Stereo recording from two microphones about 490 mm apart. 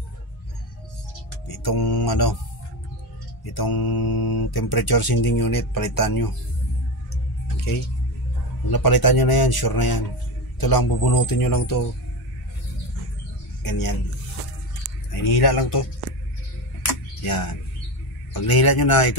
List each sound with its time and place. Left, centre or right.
1.5 s speech: left
3.4 s speech: left
8.6 s speech: left
13.6 s speech: left
15.4 s speech: left
17.2 s speech: left